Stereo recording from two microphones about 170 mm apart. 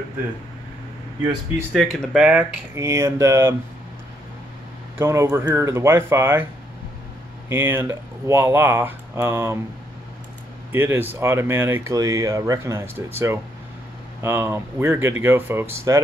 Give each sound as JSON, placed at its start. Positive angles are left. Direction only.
{"t": 1.7, "sound": "speech", "side_deg": 0}
{"t": 2.8, "sound": "speech", "side_deg": -15}
{"t": 4.9, "sound": "speech", "side_deg": -15}
{"t": 7.4, "sound": "speech", "side_deg": -15}
{"t": 10.7, "sound": "speech", "side_deg": -10}